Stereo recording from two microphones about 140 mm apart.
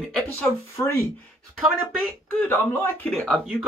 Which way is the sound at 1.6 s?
Centre (ahead or behind).